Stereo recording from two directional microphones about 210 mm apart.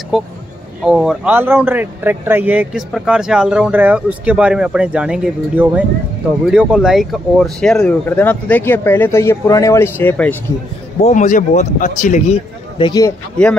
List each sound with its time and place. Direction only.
0.1 s speech: centre (ahead or behind)
11.0 s speech: 35° left (ahead or behind)